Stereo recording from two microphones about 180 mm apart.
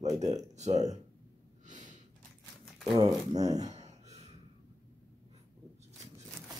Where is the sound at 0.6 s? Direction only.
40° right (ahead or behind).